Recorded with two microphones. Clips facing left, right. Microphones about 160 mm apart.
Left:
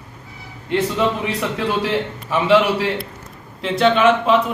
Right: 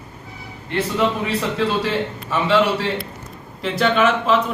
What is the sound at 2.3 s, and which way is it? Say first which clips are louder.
Speech: left 2 dB; 15° left (ahead or behind).